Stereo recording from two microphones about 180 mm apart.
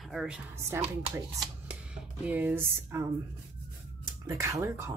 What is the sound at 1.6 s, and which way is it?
Speech, 10° right (ahead or behind).